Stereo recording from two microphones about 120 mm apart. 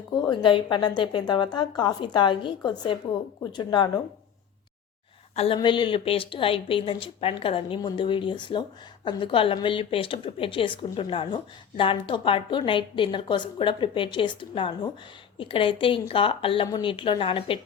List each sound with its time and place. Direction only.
0.3 s speech: 45° left (ahead or behind)
5.3 s a woman's voice: 55° left (ahead or behind)
5.5 s a woman's voice: 40° left (ahead or behind)